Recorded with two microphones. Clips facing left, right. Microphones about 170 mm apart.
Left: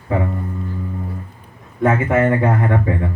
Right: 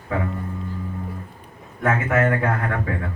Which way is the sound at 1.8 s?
25° left (ahead or behind).